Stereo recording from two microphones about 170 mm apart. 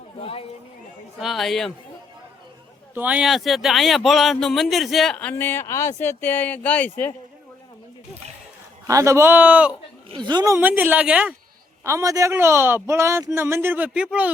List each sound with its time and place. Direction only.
0.2 s a sound: 35° left (ahead or behind)
1.2 s a man's voice: centre (ahead or behind)
2.9 s a man's voice: 10° right (ahead or behind); by 7.1 s 10° left (ahead or behind)
8.9 s speech: 20° right (ahead or behind)
10.1 s speech: 25° right (ahead or behind); by 11.3 s 5° right (ahead or behind)
11.8 s speech: 15° right (ahead or behind)